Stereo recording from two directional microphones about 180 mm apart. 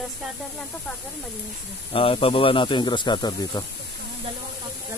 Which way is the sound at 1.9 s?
30° left (ahead or behind).